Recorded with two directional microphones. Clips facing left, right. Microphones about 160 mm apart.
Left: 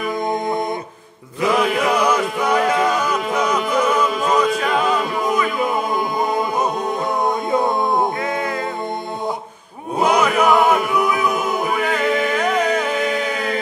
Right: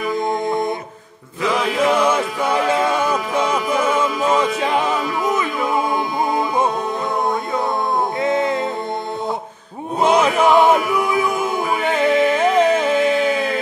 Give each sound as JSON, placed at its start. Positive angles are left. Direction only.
{"t": 1.9, "sound": "music", "side_deg": -25}
{"t": 8.2, "sound": "music", "side_deg": -25}
{"t": 10.0, "sound": "chant", "side_deg": -25}